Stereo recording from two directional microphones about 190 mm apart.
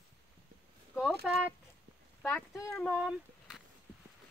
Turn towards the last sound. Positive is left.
turn(degrees=-5)  # may be behind; listen again after turning